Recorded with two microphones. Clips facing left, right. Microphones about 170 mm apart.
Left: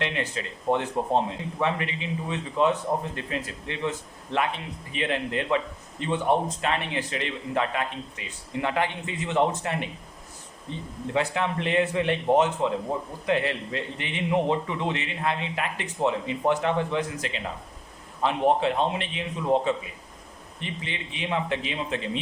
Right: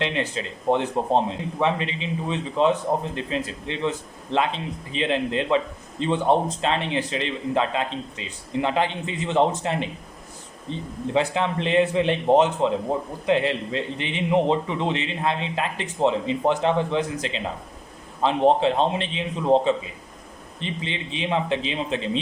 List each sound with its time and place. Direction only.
0.0 s a man's voice: 25° right (ahead or behind)
11.1 s a man's voice: 25° right (ahead or behind)